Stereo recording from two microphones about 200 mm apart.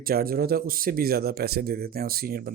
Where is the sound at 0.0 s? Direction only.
50° right (ahead or behind).